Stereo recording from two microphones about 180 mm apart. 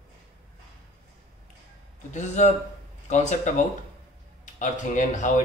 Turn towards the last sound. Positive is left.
turn(degrees=45)  # may be behind; listen again after turning